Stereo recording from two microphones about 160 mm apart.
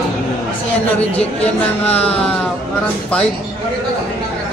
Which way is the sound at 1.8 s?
40° left (ahead or behind).